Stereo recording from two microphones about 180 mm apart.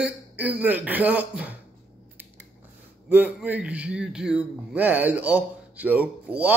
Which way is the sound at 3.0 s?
10° right (ahead or behind).